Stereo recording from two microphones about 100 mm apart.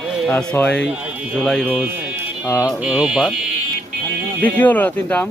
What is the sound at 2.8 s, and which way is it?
Speech, 5° right (ahead or behind).